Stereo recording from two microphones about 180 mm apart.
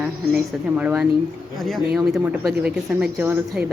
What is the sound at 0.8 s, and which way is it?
Speech, 10° right (ahead or behind).